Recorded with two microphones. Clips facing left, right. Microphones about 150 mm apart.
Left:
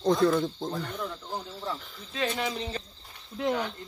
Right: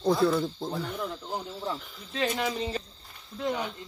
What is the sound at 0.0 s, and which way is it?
Speech, 5° right (ahead or behind).